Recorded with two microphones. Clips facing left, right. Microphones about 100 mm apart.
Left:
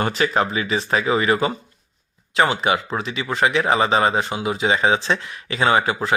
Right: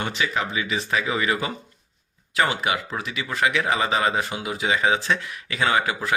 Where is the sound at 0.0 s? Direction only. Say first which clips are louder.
Left 6 dB; 45° left (ahead or behind).